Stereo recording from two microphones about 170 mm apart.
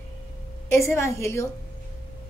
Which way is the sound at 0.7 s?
15° left (ahead or behind).